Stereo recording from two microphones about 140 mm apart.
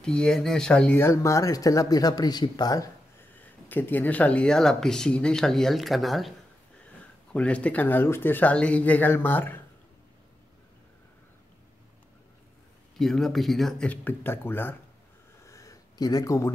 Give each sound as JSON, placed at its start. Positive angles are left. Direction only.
{"t": 0.0, "sound": "speech", "side_deg": 5}
{"t": 1.0, "sound": "speech", "side_deg": 20}
{"t": 3.3, "sound": "speech", "side_deg": 15}
{"t": 7.3, "sound": "speech", "side_deg": 10}
{"t": 13.0, "sound": "speech", "side_deg": 0}
{"t": 15.4, "sound": "a sound", "side_deg": 25}